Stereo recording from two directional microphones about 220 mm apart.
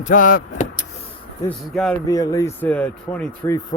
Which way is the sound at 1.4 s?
Centre (ahead or behind).